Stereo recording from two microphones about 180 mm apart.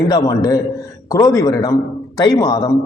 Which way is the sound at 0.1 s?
20° left (ahead or behind).